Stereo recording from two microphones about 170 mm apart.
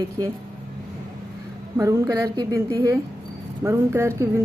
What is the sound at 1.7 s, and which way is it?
A woman's voice, 20° right (ahead or behind).